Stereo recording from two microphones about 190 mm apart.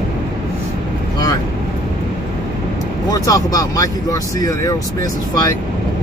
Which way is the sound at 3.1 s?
20° left (ahead or behind).